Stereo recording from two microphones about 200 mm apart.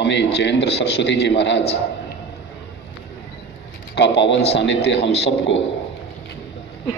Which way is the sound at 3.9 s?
60° left (ahead or behind).